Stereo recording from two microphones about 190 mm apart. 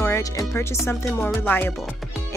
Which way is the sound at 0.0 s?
15° left (ahead or behind).